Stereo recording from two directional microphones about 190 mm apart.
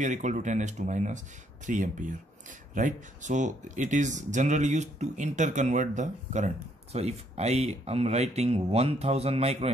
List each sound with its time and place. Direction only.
0.0 s speech: 40° right (ahead or behind)